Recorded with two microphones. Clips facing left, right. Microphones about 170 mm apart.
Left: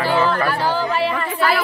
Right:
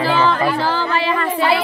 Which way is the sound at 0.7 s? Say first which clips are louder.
Right 1 dB; 90° right.